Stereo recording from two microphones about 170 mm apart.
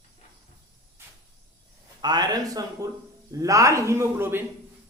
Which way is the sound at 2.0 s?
25° right (ahead or behind).